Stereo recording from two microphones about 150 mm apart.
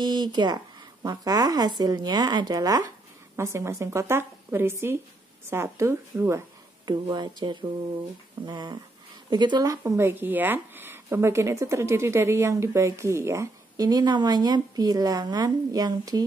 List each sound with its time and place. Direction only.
0.0 s a woman's voice: 30° right (ahead or behind)
6.9 s speech: 30° right (ahead or behind)